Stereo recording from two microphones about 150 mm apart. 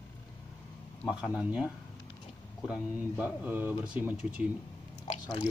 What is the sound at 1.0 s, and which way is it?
Speech, 5° right (ahead or behind).